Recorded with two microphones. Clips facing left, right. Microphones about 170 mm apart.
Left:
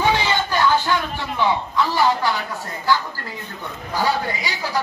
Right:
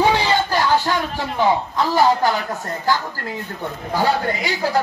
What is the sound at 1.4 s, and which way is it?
Speech, 45° right (ahead or behind).